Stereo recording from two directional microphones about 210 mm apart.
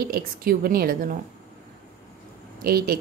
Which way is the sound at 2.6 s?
45° right (ahead or behind).